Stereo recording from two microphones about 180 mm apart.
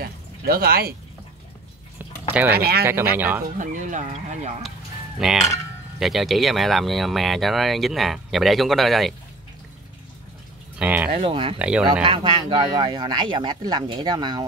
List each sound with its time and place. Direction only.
0.0 s speech: 60° right (ahead or behind)
2.0 s a sound: 10° right (ahead or behind)
2.5 s speech: 60° right (ahead or behind)
2.8 s speech: 15° right (ahead or behind)
3.5 s speech: 45° right (ahead or behind)
5.2 s speech: centre (ahead or behind)
10.8 s speech: 10° right (ahead or behind)
11.1 s speech: 30° right (ahead or behind)
11.5 s speech: 5° right (ahead or behind)
12.0 s speech: 30° right (ahead or behind)